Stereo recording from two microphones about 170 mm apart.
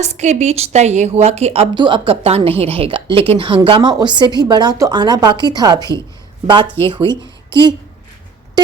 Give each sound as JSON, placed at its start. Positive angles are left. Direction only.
{"t": 0.0, "sound": "a woman's voice", "side_deg": -40}